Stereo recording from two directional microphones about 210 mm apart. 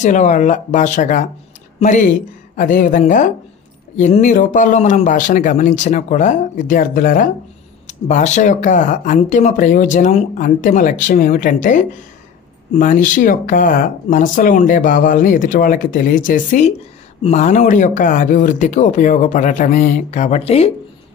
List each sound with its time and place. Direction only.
0.0 s speech: 35° left (ahead or behind)